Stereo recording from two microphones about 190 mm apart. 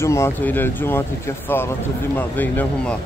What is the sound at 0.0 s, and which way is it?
Speech, 15° left (ahead or behind).